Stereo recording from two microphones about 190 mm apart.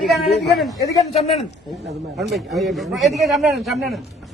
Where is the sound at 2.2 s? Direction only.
Centre (ahead or behind).